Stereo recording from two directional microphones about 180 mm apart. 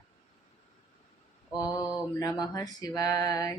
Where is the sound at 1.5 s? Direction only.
20° left (ahead or behind).